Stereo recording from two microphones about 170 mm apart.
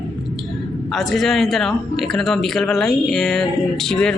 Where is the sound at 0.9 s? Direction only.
Centre (ahead or behind).